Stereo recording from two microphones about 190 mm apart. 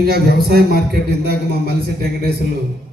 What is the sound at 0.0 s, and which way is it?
A man's voice, 55° right (ahead or behind).